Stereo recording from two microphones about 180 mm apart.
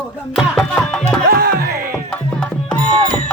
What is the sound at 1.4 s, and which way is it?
Music, 60° right (ahead or behind).